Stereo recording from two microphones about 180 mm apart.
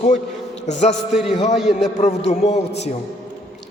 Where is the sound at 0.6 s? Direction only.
40° left (ahead or behind).